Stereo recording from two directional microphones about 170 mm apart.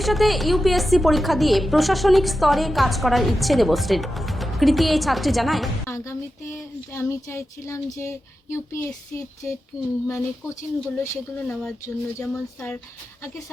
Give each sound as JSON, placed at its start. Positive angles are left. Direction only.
{"t": 0.0, "sound": "speech", "side_deg": 0}
{"t": 6.9, "sound": "music", "side_deg": 15}